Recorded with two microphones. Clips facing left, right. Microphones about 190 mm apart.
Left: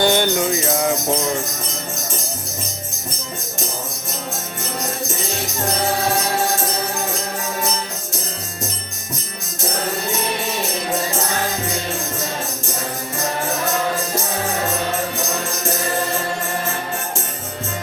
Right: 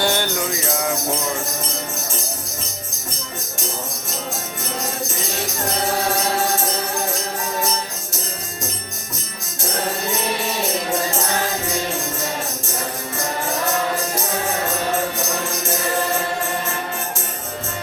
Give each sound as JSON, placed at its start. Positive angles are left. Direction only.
{"t": 0.0, "sound": "music", "side_deg": 20}